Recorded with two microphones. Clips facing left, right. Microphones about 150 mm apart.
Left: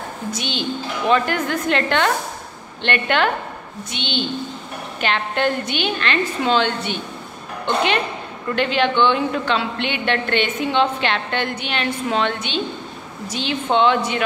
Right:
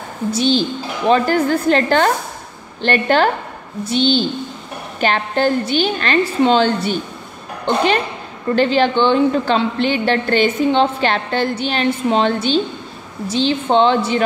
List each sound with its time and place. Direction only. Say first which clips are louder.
0.3 s a woman's voice: right 9 dB; 35° right (ahead or behind)